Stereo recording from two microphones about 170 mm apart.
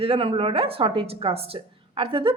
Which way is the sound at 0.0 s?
35° right (ahead or behind).